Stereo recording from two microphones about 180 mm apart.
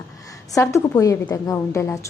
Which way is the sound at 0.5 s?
15° left (ahead or behind).